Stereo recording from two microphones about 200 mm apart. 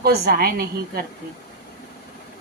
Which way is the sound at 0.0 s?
50° right (ahead or behind).